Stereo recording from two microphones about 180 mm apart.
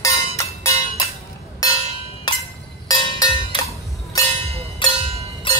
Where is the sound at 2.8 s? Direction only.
20° left (ahead or behind).